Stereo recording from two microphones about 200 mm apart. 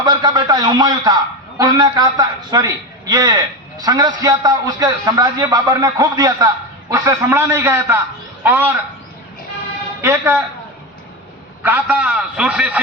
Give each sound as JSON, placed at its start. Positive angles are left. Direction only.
{"t": 0.0, "sound": "a man's voice", "side_deg": -20}
{"t": 10.0, "sound": "a man's voice", "side_deg": -10}
{"t": 11.6, "sound": "a man's voice", "side_deg": -10}